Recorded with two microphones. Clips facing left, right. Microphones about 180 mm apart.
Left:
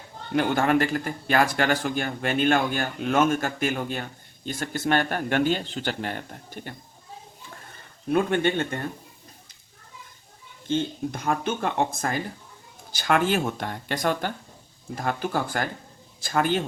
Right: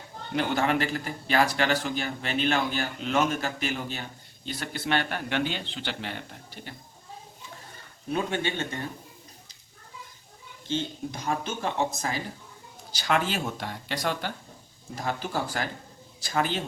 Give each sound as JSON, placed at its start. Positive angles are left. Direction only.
{"t": 0.3, "sound": "a man's voice", "side_deg": 50}
{"t": 8.1, "sound": "a man's voice", "side_deg": 55}
{"t": 10.7, "sound": "a man's voice", "side_deg": 55}